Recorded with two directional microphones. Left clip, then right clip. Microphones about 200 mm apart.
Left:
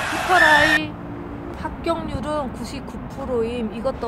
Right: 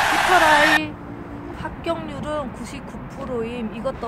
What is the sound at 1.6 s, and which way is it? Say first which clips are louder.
Speech: left 2 dB; 10° left (ahead or behind).